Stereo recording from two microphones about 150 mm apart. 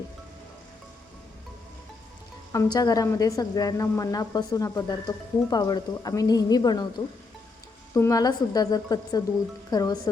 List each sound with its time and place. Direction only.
2.5 s a woman's voice: 25° left (ahead or behind)
7.9 s a woman's voice: 20° left (ahead or behind)